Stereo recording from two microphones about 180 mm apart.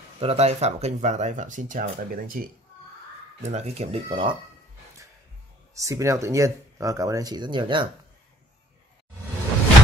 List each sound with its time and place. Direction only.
0.2 s speech: 35° right (ahead or behind); by 2.5 s 50° right (ahead or behind)
3.4 s speech: 35° right (ahead or behind)
5.8 s speech: 15° right (ahead or behind)